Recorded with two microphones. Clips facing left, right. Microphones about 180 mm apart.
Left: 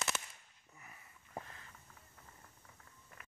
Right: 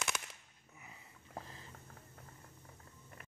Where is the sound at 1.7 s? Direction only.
50° right (ahead or behind).